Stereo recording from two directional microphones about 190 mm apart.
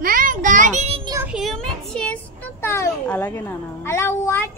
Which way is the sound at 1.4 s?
5° left (ahead or behind).